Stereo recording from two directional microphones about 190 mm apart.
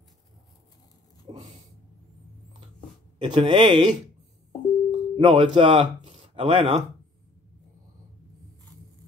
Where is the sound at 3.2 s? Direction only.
25° right (ahead or behind).